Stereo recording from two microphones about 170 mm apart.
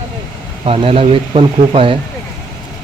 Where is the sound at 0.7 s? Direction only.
35° right (ahead or behind).